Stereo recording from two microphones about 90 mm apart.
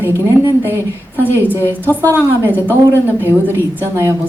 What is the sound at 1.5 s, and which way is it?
A woman's voice, 20° left (ahead or behind).